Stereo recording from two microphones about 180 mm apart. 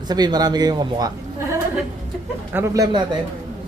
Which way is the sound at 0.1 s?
25° right (ahead or behind).